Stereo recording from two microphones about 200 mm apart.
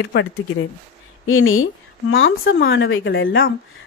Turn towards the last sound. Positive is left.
turn(degrees=70)  # may be behind; listen again after turning